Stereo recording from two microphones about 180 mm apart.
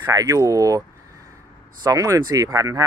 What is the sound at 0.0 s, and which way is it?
Speech, 20° right (ahead or behind).